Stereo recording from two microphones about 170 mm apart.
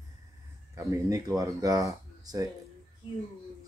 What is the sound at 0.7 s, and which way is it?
Speech, 20° right (ahead or behind).